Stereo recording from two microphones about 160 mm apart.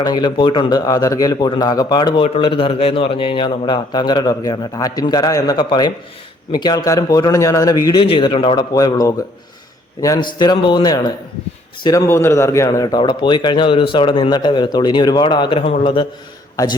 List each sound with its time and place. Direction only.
0.0 s a man's voice: 25° left (ahead or behind)
8.0 s a man's voice: 35° left (ahead or behind)
8.7 s a man's voice: 25° left (ahead or behind)